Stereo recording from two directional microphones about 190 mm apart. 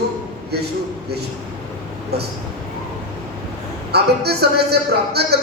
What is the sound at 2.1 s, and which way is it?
Speech, 60° right (ahead or behind).